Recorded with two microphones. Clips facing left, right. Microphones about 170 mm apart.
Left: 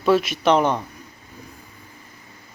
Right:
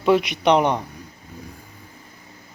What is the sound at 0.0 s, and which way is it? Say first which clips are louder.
Speech: even; 20° right (ahead or behind).